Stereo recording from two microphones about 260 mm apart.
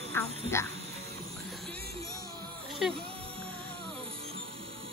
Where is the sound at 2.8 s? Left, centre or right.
Centre.